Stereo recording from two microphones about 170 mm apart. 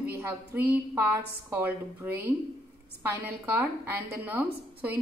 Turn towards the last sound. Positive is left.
turn(degrees=-10)  # may be behind; listen again after turning